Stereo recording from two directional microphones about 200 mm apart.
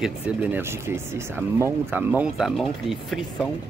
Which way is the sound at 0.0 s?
10° right (ahead or behind).